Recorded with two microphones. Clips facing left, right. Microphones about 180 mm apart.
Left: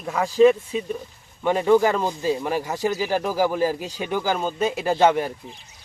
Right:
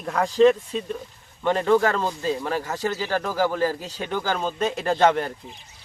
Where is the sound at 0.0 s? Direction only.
5° left (ahead or behind).